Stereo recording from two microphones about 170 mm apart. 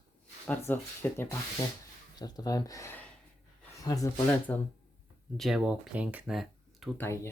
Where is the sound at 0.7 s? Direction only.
10° left (ahead or behind).